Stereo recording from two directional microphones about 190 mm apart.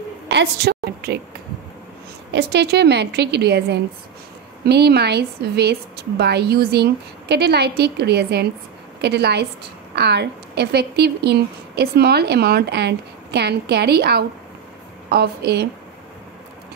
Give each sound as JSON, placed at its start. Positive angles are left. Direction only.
{"t": 0.3, "sound": "a woman's voice", "side_deg": -60}
{"t": 2.3, "sound": "a woman's voice", "side_deg": -60}